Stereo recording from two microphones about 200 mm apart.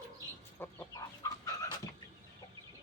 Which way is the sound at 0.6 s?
10° left (ahead or behind).